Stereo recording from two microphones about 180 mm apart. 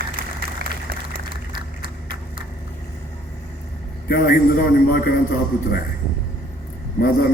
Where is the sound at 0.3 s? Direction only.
55° right (ahead or behind).